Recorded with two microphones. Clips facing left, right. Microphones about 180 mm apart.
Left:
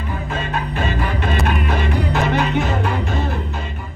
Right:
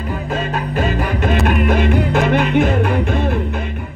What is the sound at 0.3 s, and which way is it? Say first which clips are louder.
Music: right 3 dB; 40° right (ahead or behind).